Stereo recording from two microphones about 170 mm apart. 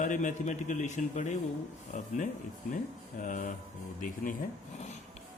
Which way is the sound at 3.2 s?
50° left (ahead or behind).